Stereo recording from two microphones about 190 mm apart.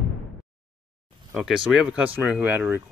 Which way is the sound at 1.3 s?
Centre (ahead or behind).